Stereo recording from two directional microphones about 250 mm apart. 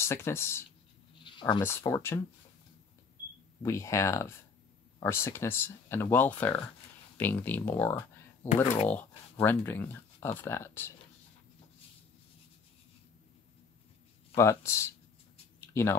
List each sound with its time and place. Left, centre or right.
0.0 s speech: centre
1.2 s a sound: centre
1.9 s speech: centre
3.6 s speech: centre
14.3 s speech: centre